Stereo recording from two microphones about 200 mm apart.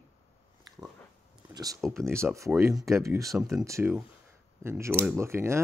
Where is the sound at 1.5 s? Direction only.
20° right (ahead or behind).